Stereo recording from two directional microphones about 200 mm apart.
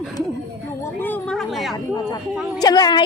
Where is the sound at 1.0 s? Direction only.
5° left (ahead or behind).